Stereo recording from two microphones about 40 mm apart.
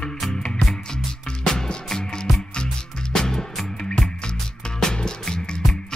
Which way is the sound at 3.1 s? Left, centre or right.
Centre.